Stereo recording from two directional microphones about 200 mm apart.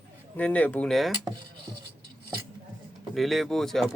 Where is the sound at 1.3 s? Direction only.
20° right (ahead or behind).